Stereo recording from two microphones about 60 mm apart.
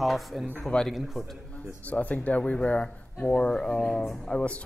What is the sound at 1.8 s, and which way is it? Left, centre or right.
Speech, left.